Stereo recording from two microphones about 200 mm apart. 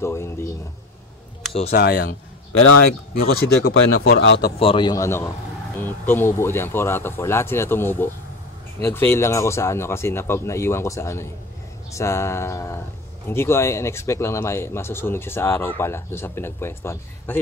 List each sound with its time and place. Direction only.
0.0 s a man's voice: 15° left (ahead or behind)
1.7 s speech: 50° left (ahead or behind)
4.2 s speech: 60° left (ahead or behind)
4.6 s a man's voice: 25° left (ahead or behind)